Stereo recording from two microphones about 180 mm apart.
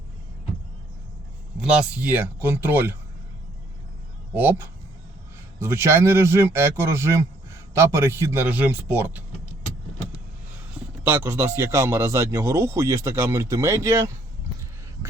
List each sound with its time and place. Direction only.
1.7 s speech: 10° right (ahead or behind)
4.4 s speech: 10° right (ahead or behind)
11.0 s speech: 10° right (ahead or behind)